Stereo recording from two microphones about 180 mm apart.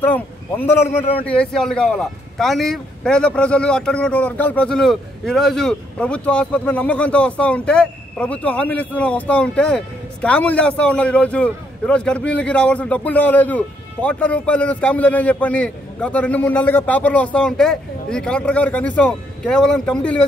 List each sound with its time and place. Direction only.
0.0 s speech: 10° left (ahead or behind)